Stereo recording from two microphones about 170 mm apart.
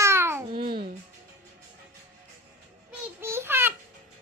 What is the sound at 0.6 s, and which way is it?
Music, 65° right (ahead or behind).